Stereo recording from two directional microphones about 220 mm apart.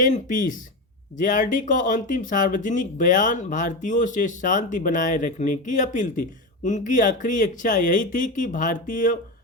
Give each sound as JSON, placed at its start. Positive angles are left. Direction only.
{"t": 0.0, "sound": "speech", "side_deg": 35}